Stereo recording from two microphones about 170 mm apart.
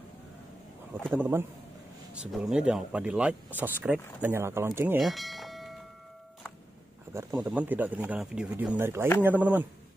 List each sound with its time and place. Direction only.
1.1 s speech: 15° right (ahead or behind)
4.9 s a sound: centre (ahead or behind)
7.2 s speech: 20° right (ahead or behind)
7.5 s speech: 10° right (ahead or behind)